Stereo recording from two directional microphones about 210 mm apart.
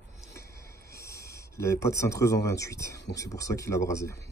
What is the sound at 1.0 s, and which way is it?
Speech, 15° left (ahead or behind).